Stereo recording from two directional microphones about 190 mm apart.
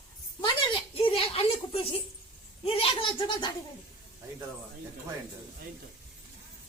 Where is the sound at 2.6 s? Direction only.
30° left (ahead or behind).